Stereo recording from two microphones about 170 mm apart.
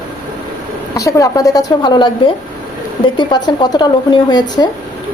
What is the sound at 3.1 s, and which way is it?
A woman's voice, 25° left (ahead or behind).